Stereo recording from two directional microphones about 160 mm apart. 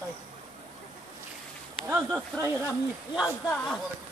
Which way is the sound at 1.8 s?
10° right (ahead or behind).